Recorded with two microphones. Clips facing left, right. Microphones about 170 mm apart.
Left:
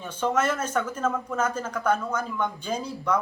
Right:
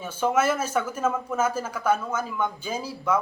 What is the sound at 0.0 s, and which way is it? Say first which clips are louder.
Speech: right 2 dB; 10° right (ahead or behind).